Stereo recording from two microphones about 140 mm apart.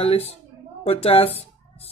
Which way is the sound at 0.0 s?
45° left (ahead or behind).